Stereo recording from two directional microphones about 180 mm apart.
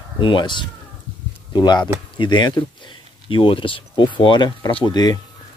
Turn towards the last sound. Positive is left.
turn(degrees=20)  # may be behind; listen again after turning